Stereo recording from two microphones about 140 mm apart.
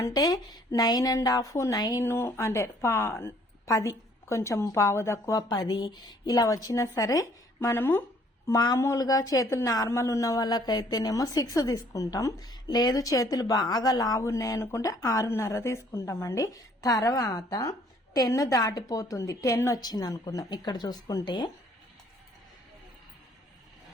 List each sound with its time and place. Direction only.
0.0 s speech: 30° left (ahead or behind)